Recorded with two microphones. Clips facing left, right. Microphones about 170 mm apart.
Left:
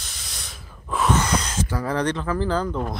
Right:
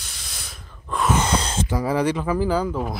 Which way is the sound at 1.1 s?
30° right (ahead or behind).